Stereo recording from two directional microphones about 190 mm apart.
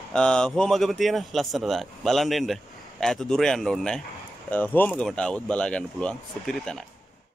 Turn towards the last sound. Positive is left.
turn(degrees=5)  # may be behind; listen again after turning